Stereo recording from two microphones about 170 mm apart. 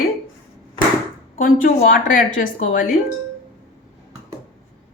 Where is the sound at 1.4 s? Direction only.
55° left (ahead or behind).